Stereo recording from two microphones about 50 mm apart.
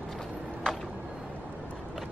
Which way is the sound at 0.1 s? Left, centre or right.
Centre.